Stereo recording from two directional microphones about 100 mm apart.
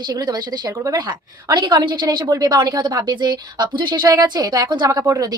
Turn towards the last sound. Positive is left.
turn(degrees=-35)  # may be behind; listen again after turning